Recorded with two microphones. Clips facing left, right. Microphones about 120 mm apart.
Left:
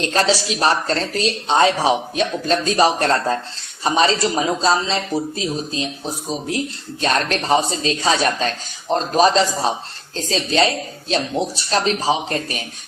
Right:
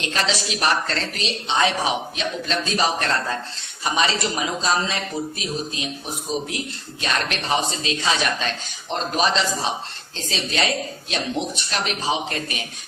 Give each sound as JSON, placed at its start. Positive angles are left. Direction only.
{"t": 0.0, "sound": "speech", "side_deg": 40}
{"t": 7.0, "sound": "speech", "side_deg": 40}